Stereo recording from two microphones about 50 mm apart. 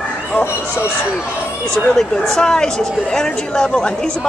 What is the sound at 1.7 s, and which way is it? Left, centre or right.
Speech, centre.